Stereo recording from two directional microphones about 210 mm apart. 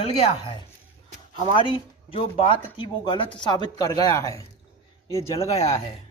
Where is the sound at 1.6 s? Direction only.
25° left (ahead or behind).